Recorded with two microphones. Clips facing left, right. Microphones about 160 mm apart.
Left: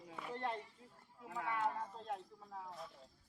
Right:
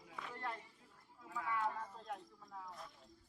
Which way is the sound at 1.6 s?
30° left (ahead or behind).